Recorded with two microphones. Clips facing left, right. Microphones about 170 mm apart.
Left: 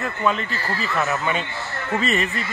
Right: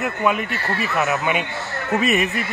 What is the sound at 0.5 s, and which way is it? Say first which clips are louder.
Speech: right 2 dB; 65° right (ahead or behind).